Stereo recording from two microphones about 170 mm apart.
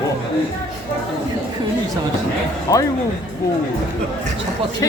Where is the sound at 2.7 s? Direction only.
20° left (ahead or behind).